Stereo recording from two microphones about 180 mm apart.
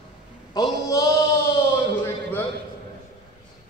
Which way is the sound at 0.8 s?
15° left (ahead or behind).